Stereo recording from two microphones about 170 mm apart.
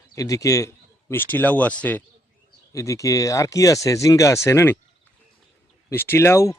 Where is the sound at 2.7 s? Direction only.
20° left (ahead or behind).